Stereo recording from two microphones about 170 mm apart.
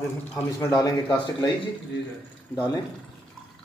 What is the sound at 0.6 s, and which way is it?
Speech, 25° left (ahead or behind).